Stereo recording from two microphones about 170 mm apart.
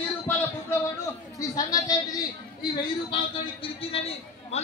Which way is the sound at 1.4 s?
20° left (ahead or behind).